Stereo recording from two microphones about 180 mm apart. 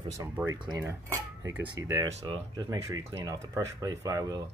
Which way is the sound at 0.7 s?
15° right (ahead or behind).